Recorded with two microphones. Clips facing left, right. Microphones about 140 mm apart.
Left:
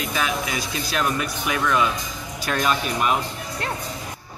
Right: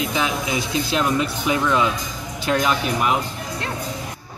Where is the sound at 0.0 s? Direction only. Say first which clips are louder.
Right 2 dB; 20° right (ahead or behind).